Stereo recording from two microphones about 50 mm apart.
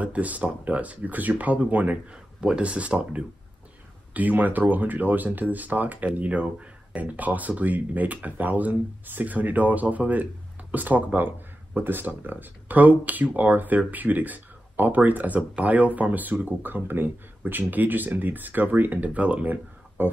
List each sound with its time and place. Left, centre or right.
0.0 s speech: right
4.1 s speech: right